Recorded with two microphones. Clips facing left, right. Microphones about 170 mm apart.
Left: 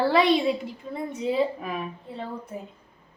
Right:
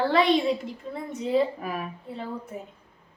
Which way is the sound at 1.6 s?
5° right (ahead or behind).